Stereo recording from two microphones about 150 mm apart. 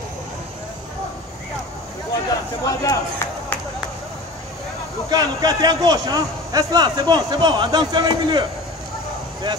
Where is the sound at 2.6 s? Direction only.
25° left (ahead or behind).